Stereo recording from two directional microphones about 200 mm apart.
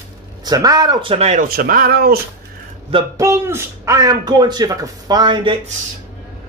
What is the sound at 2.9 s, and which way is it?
A man's voice, 20° right (ahead or behind).